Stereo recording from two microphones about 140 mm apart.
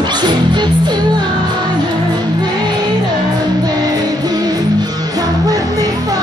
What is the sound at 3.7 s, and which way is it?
Music, 30° right (ahead or behind).